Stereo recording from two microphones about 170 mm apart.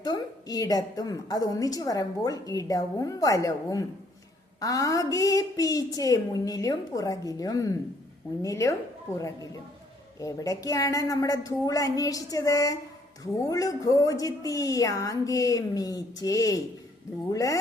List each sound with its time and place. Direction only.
0.0 s a woman's voice: 20° left (ahead or behind)